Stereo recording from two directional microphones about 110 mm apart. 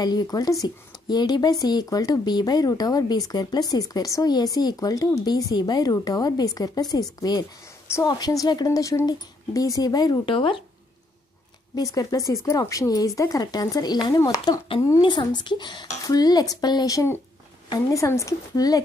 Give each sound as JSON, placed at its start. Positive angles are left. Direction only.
{"t": 0.0, "sound": "speech", "side_deg": 40}
{"t": 10.2, "sound": "speech", "side_deg": 50}
{"t": 11.7, "sound": "a woman's voice", "side_deg": 35}